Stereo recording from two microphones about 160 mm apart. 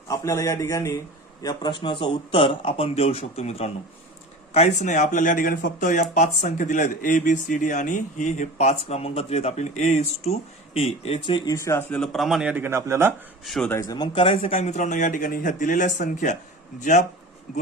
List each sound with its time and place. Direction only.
0.1 s speech: 20° left (ahead or behind)
11.5 s speech: 15° left (ahead or behind); by 13.1 s 15° right (ahead or behind)
13.4 s speech: centre (ahead or behind)
13.7 s speech: 20° left (ahead or behind); by 17.1 s 50° left (ahead or behind)